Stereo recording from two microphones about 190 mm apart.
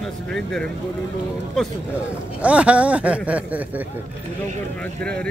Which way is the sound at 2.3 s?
5° right (ahead or behind).